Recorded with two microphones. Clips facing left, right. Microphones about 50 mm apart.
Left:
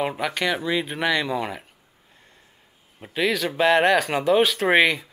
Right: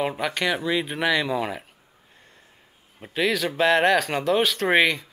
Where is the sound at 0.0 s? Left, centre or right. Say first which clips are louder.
Even; centre.